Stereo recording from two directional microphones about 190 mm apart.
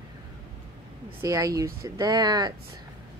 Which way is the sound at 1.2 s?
15° right (ahead or behind).